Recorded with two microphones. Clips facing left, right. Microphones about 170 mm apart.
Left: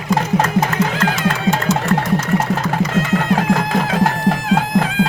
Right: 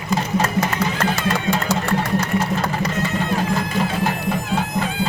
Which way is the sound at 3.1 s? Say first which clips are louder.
Left 7 dB; 85° left.